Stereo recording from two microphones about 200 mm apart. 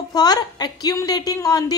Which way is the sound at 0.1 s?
20° left (ahead or behind).